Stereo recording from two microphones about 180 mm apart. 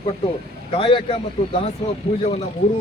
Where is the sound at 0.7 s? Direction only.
30° left (ahead or behind).